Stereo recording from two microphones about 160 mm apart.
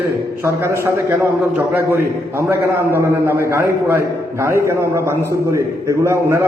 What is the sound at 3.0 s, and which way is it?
A man's voice, 15° right (ahead or behind).